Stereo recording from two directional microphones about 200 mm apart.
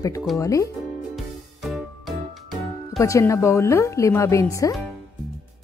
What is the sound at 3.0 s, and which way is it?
A woman's voice, 15° left (ahead or behind).